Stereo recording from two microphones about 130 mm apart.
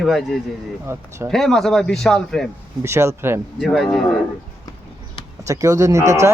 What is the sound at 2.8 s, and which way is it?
Speech, 20° right (ahead or behind).